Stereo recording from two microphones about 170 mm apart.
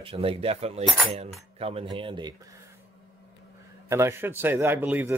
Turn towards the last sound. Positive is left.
turn(degrees=-10)  # may be behind; listen again after turning